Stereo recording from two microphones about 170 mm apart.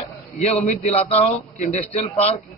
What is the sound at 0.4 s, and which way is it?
A man's voice, 40° left (ahead or behind).